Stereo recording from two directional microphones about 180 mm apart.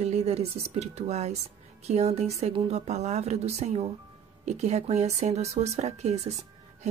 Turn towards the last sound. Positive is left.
turn(degrees=-40)  # may be behind; listen again after turning